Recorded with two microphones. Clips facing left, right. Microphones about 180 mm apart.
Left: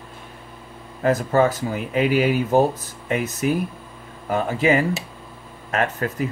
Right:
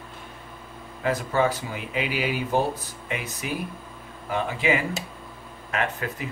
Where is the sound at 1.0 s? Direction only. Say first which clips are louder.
Left 5 dB; 45° left (ahead or behind).